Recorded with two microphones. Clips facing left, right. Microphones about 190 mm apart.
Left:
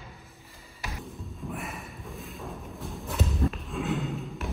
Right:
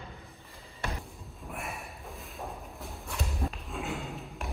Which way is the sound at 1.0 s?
Centre (ahead or behind).